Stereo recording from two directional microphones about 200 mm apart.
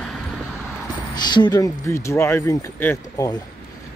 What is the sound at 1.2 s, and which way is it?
Speech, 20° left (ahead or behind).